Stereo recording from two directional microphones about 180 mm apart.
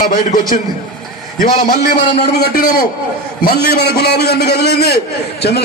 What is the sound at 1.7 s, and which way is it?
A man's voice, 60° left (ahead or behind).